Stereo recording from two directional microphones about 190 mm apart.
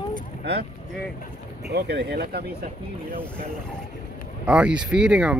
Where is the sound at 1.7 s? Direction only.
60° right (ahead or behind).